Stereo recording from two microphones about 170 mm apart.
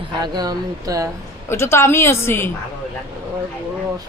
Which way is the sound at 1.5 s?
15° left (ahead or behind).